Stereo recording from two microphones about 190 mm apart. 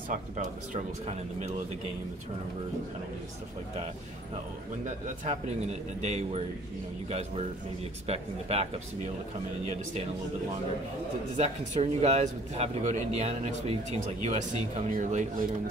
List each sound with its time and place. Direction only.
0.1 s speech: 40° right (ahead or behind)
5.2 s speech: 35° right (ahead or behind)
11.3 s speech: 35° right (ahead or behind)